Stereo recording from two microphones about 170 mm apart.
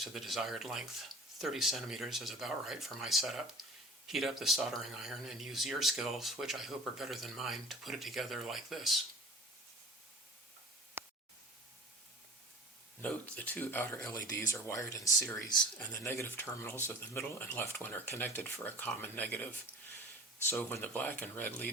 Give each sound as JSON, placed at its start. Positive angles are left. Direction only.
{"t": 0.0, "sound": "speech", "side_deg": 0}
{"t": 11.0, "sound": "a sound", "side_deg": -15}
{"t": 13.0, "sound": "speech", "side_deg": 10}
{"t": 20.5, "sound": "speech", "side_deg": 10}